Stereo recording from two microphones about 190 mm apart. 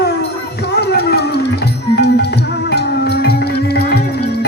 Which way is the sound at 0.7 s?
55° left (ahead or behind).